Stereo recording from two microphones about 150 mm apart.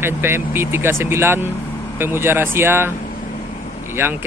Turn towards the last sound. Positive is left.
turn(degrees=-15)  # may be behind; listen again after turning